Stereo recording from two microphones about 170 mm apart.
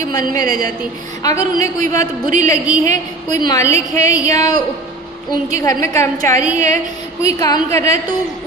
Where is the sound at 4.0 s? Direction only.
20° left (ahead or behind).